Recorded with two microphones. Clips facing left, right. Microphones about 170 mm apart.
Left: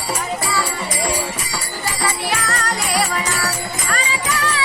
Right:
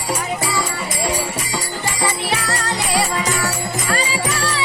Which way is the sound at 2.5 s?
25° right (ahead or behind).